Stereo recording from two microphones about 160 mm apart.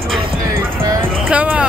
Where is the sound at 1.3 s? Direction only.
10° right (ahead or behind).